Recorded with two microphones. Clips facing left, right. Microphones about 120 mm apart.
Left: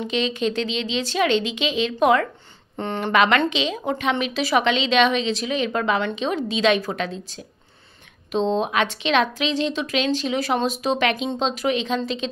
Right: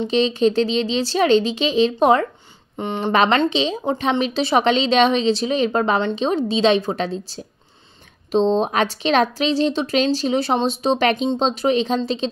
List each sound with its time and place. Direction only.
0.0 s a woman's voice: 30° right (ahead or behind)
2.8 s speech: 20° right (ahead or behind)
3.1 s a woman's voice: 30° right (ahead or behind)